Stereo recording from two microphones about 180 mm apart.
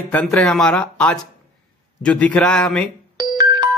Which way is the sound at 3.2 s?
20° right (ahead or behind).